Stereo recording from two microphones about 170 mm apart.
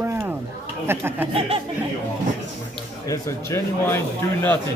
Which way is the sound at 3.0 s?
20° left (ahead or behind).